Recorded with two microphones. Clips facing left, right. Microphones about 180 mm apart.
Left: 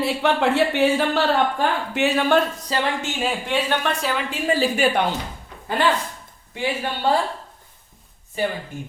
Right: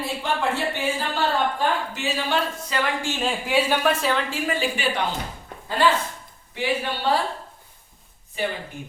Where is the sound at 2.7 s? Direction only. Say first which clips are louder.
Left 2 dB; 35° left (ahead or behind).